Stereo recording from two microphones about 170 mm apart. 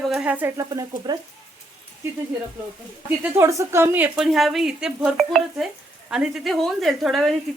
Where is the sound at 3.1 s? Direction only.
15° right (ahead or behind).